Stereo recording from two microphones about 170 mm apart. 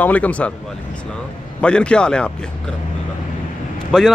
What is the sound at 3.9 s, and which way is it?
Speech, centre (ahead or behind).